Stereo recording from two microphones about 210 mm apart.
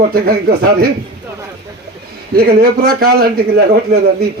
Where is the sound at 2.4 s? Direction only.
45° right (ahead or behind).